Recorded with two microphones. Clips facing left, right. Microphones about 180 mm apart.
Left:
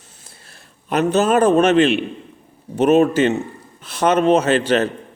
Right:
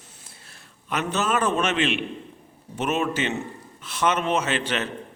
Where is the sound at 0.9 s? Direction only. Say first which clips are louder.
Left 9 dB; 35° left (ahead or behind).